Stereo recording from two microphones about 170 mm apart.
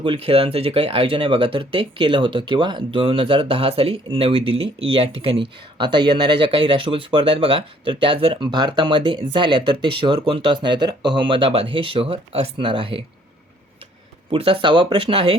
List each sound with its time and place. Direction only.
0.0 s speech: 30° right (ahead or behind)
14.3 s speech: 35° right (ahead or behind)